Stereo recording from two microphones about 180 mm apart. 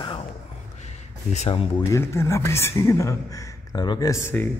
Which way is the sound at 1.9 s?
15° left (ahead or behind).